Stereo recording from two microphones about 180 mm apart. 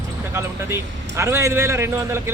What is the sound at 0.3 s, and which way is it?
Speech, 15° right (ahead or behind).